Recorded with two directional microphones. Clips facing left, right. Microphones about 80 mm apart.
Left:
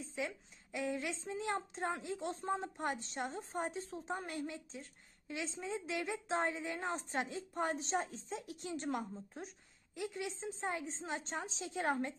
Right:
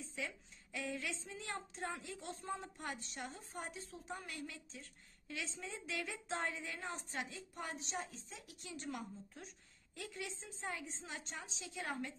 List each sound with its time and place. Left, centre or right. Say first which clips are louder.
0.1 s a woman's voice: left 6 dB; left